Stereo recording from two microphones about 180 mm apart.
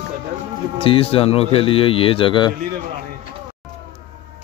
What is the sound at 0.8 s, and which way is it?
Speech, 30° left (ahead or behind).